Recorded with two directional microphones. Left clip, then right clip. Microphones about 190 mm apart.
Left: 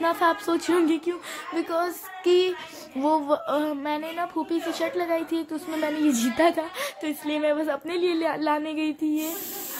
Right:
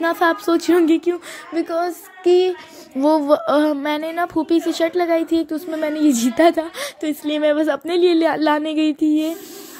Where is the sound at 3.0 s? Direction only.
25° right (ahead or behind).